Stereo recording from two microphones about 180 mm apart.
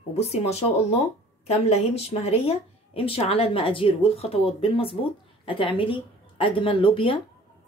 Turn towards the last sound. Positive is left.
turn(degrees=30)  # may be behind; listen again after turning